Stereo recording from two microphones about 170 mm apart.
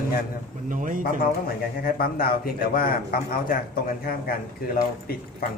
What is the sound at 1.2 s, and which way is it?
A man's voice, 60° left (ahead or behind).